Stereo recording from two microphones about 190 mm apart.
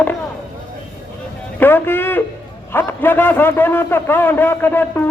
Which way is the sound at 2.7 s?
10° left (ahead or behind).